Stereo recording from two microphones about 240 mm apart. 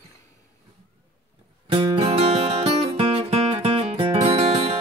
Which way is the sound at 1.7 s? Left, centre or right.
Right.